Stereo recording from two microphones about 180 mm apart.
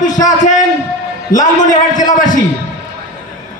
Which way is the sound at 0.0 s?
45° left (ahead or behind).